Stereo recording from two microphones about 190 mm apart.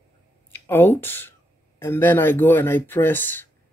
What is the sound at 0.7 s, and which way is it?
Speech, 10° left (ahead or behind).